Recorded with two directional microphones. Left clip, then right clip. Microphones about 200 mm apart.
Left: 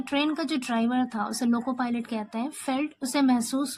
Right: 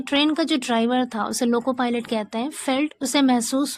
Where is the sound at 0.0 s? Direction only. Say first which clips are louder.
Right 6 dB; 35° right (ahead or behind).